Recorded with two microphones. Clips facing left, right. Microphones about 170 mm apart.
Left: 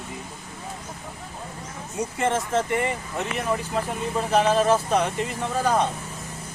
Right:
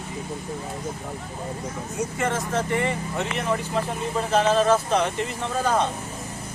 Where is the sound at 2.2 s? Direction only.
25° left (ahead or behind).